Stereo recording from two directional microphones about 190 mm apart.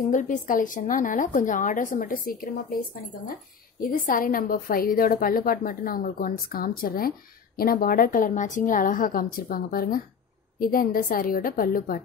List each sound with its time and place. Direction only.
0.1 s a woman's voice: 45° left (ahead or behind)
3.8 s a woman's voice: 45° left (ahead or behind)